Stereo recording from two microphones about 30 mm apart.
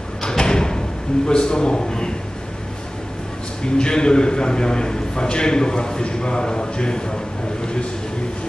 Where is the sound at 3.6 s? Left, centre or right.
Left.